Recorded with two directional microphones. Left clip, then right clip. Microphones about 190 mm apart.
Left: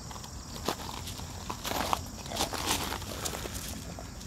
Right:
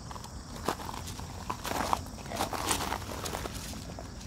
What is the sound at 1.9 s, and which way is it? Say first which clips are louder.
Walk: left 1 dB; 15° right (ahead or behind).